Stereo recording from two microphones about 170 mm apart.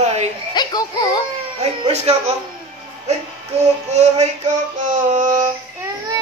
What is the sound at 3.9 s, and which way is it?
Music, 40° right (ahead or behind).